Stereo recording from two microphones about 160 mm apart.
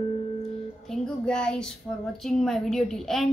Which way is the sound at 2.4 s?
5° left (ahead or behind).